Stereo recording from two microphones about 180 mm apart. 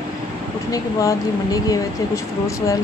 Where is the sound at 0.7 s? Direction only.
20° left (ahead or behind).